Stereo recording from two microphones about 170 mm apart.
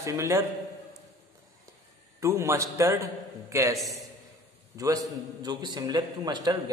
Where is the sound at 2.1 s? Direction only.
15° right (ahead or behind).